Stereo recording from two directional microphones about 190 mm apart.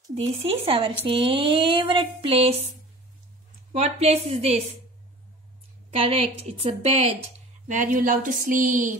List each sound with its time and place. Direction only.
0.1 s a sound: 30° right (ahead or behind)
3.7 s a woman's voice: 35° right (ahead or behind)
5.9 s a woman's voice: 30° right (ahead or behind)